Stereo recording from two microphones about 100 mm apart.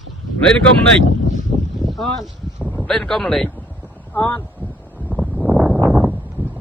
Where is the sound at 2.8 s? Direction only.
5° left (ahead or behind).